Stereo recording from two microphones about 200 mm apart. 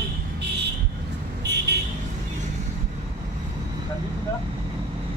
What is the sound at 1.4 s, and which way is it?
Vehicle, 55° right (ahead or behind).